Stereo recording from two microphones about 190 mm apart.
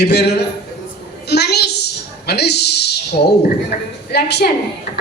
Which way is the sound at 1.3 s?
60° left (ahead or behind).